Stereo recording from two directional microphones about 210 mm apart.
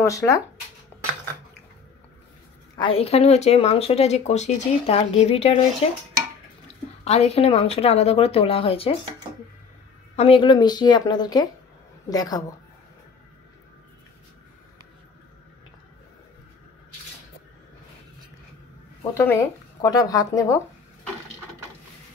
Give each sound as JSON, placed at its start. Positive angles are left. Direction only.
{"t": 0.0, "sound": "speech", "side_deg": 15}
{"t": 2.7, "sound": "speech", "side_deg": 25}
{"t": 7.1, "sound": "speech", "side_deg": 30}
{"t": 10.1, "sound": "speech", "side_deg": 25}
{"t": 19.1, "sound": "speech", "side_deg": 10}